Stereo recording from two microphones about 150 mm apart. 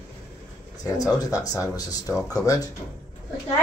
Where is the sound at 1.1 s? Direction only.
25° left (ahead or behind).